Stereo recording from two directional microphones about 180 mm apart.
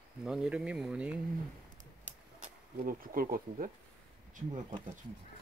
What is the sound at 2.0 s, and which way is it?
Bee, 45° right (ahead or behind).